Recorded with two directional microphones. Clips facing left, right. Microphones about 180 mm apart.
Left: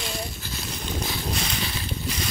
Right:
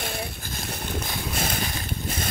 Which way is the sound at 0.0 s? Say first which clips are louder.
Right 1 dB; 60° right (ahead or behind).